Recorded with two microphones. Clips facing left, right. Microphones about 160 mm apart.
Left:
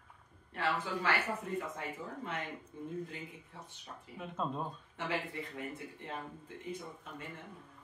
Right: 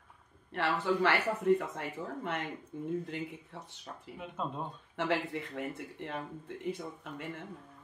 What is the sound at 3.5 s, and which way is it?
Speech, 70° right (ahead or behind).